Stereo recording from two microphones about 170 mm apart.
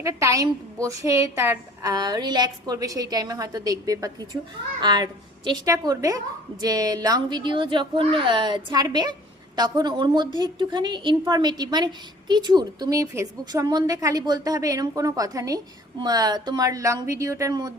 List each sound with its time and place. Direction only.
0.0 s a woman's voice: 20° right (ahead or behind)